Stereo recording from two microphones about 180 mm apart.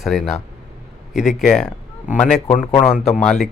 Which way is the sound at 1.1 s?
40° left (ahead or behind).